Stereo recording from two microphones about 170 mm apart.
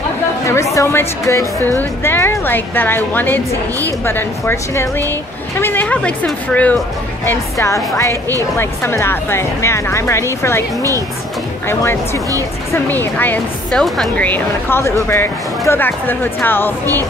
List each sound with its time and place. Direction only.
0.5 s a woman's voice: 20° left (ahead or behind)
12.7 s a woman's voice: 10° left (ahead or behind)